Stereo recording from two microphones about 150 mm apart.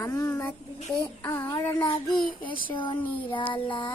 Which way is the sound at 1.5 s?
25° left (ahead or behind).